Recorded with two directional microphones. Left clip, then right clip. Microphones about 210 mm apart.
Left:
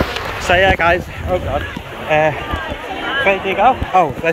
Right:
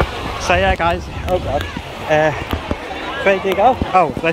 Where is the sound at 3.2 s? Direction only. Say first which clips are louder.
Even; 25° right (ahead or behind).